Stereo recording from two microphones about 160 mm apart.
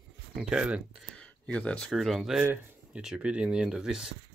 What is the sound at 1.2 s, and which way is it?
Speech, 5° left (ahead or behind).